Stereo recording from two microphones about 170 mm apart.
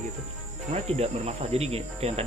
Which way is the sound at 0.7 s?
40° right (ahead or behind).